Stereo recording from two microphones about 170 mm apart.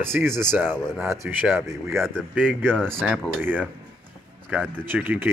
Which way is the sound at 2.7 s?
5° left (ahead or behind).